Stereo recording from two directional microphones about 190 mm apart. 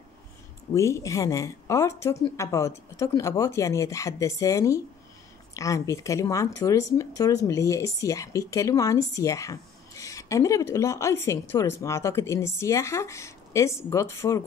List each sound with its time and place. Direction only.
0.7 s speech: 15° left (ahead or behind)